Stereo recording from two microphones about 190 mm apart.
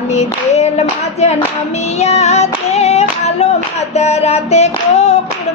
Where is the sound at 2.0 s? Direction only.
35° left (ahead or behind).